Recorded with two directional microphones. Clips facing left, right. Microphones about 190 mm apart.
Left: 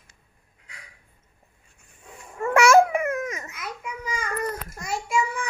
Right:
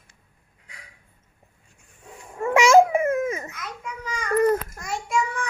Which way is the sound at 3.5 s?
10° left (ahead or behind).